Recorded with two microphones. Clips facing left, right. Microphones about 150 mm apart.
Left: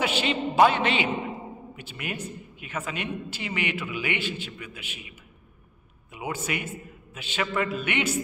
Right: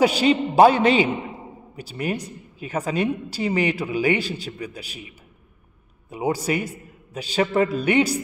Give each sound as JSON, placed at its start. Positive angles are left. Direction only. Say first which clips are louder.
{"t": 0.0, "sound": "a woman's voice", "louder": "right 8 dB", "side_deg": -40}
{"t": 6.0, "sound": "a woman's voice", "louder": "right 8 dB", "side_deg": -35}